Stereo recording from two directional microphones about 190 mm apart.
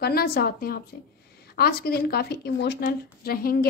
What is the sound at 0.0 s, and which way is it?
A woman's voice, 55° left (ahead or behind).